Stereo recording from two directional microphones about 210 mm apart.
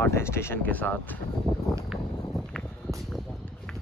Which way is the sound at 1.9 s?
Centre (ahead or behind).